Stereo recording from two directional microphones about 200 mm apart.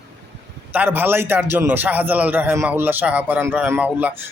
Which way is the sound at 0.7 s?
10° right (ahead or behind).